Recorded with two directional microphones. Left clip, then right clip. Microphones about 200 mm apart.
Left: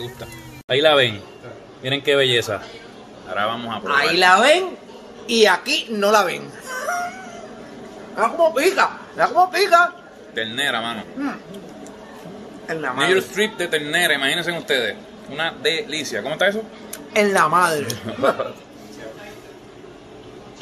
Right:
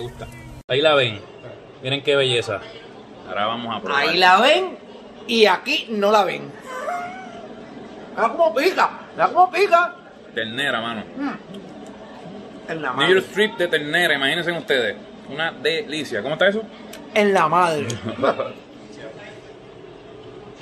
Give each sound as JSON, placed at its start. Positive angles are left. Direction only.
{"t": 0.7, "sound": "a man's voice", "side_deg": 15}
{"t": 3.3, "sound": "speech", "side_deg": 5}
{"t": 3.8, "sound": "speech", "side_deg": 30}
{"t": 5.2, "sound": "speech", "side_deg": 0}
{"t": 8.2, "sound": "speech", "side_deg": 25}
{"t": 9.1, "sound": "speech", "side_deg": 0}
{"t": 10.3, "sound": "a man's voice", "side_deg": -15}
{"t": 12.9, "sound": "a man's voice", "side_deg": -10}
{"t": 17.1, "sound": "a man's voice", "side_deg": -10}
{"t": 18.1, "sound": "speech", "side_deg": -25}